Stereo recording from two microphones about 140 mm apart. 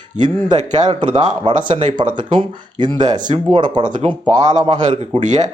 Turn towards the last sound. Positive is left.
turn(degrees=-30)  # may be behind; listen again after turning